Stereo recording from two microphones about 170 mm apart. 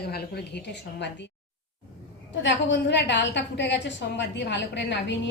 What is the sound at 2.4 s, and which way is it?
A woman's voice, 90° left.